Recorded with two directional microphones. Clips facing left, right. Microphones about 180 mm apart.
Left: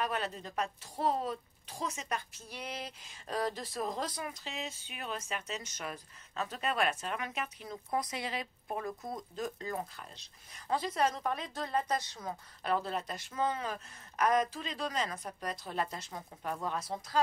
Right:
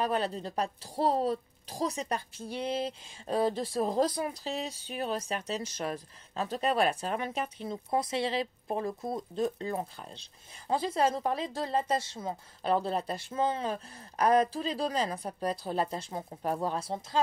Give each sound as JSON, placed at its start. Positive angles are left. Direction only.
{"t": 0.0, "sound": "a woman's voice", "side_deg": -30}